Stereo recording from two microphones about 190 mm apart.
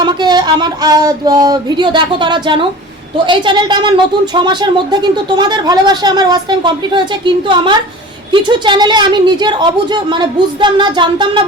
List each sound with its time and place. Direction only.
0.0 s speech: 25° right (ahead or behind)